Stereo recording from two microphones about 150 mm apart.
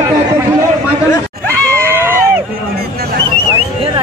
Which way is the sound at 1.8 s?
15° right (ahead or behind).